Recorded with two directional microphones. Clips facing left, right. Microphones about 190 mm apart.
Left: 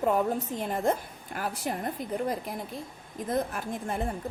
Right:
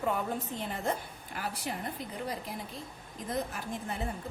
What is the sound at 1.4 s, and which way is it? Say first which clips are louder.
A woman's voice: left 5 dB; 45° left (ahead or behind).